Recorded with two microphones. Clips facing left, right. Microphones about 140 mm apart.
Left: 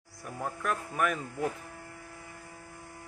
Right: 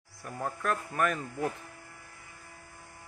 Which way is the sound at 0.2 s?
5° left (ahead or behind).